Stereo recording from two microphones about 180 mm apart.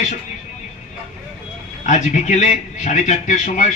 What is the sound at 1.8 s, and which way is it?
A man's voice, 40° left (ahead or behind).